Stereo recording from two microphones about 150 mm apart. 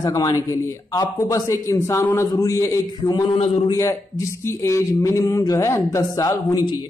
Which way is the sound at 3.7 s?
20° left (ahead or behind).